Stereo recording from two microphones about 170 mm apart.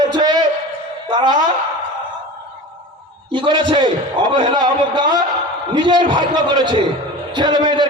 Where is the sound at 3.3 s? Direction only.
30° right (ahead or behind).